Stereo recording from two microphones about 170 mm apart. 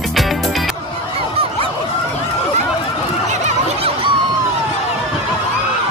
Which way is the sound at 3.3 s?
40° right (ahead or behind).